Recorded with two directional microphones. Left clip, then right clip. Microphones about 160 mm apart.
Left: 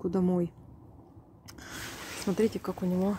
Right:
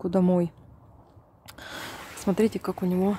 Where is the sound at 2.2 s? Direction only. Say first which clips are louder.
Right 4 dB; 20° right (ahead or behind).